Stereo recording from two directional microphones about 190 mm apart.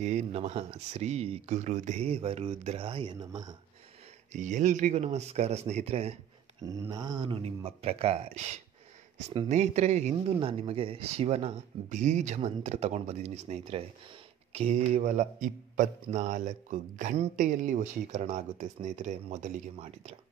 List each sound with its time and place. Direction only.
0.0 s a man's voice: 35° right (ahead or behind)
4.3 s a man's voice: 40° right (ahead or behind)
6.6 s a man's voice: 20° right (ahead or behind); by 20.2 s 35° right (ahead or behind)